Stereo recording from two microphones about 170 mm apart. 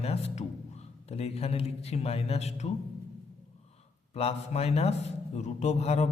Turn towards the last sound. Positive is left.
turn(degrees=40)  # may be behind; listen again after turning